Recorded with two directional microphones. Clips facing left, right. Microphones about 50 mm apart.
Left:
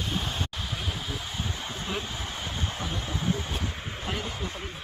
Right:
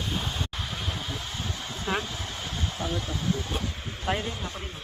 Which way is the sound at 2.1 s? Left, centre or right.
Centre.